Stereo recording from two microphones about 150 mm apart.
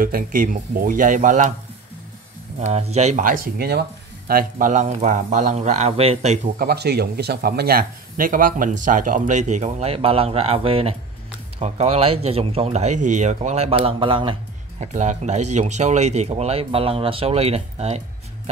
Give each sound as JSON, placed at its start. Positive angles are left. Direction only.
{"t": 0.0, "sound": "speech", "side_deg": -70}
{"t": 2.6, "sound": "speech", "side_deg": -45}
{"t": 3.3, "sound": "speech", "side_deg": -80}
{"t": 4.3, "sound": "speech", "side_deg": -65}
{"t": 6.6, "sound": "speech", "side_deg": -90}
{"t": 14.8, "sound": "speech", "side_deg": -50}